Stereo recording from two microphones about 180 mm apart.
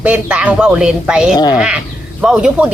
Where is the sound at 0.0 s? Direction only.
10° right (ahead or behind).